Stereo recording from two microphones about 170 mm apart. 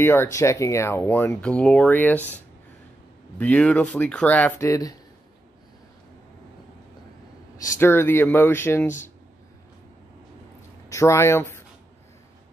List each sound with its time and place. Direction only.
0.0 s speech: 15° left (ahead or behind)
7.6 s speech: 15° left (ahead or behind)
10.9 s speech: 15° left (ahead or behind)